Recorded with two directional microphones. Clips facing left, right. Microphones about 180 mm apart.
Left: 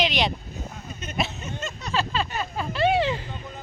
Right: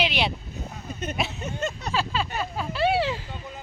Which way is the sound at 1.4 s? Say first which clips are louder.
Right 4 dB; 55° right (ahead or behind).